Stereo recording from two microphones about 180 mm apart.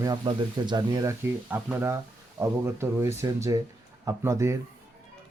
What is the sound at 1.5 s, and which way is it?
Speech, 10° right (ahead or behind).